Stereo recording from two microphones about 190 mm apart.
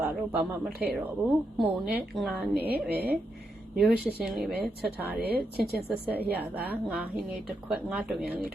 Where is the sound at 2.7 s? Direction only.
55° right (ahead or behind).